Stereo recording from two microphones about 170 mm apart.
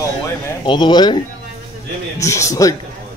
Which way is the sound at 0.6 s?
25° left (ahead or behind).